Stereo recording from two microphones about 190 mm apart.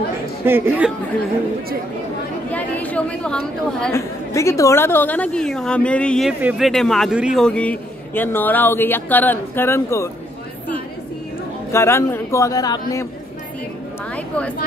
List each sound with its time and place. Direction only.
0.5 s speech: 10° right (ahead or behind)
2.5 s a woman's voice: 10° left (ahead or behind)
4.3 s a man's voice: 15° left (ahead or behind)
11.7 s a man's voice: 15° left (ahead or behind)